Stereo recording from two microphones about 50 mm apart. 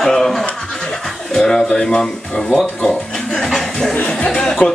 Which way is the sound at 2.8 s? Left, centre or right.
Left.